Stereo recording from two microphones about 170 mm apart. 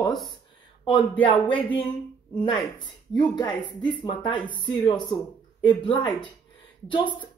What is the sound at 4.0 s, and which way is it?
Speech, 30° left (ahead or behind).